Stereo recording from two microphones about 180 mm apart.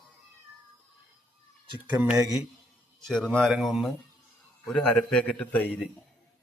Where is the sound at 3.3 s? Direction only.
Centre (ahead or behind).